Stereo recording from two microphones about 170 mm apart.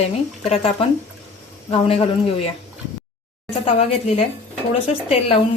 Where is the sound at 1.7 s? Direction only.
35° left (ahead or behind).